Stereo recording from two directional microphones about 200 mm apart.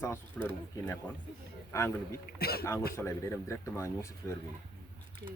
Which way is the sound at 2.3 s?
50° left (ahead or behind).